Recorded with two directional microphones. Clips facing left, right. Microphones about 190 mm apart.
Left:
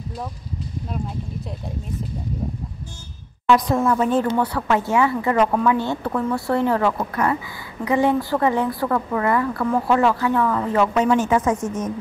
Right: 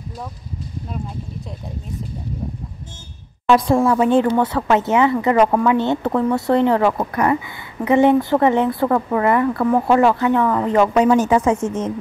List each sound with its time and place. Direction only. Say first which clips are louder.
3.4 s speech: right 3 dB; 30° right (ahead or behind)
11.0 s speech: right 3 dB; 35° right (ahead or behind)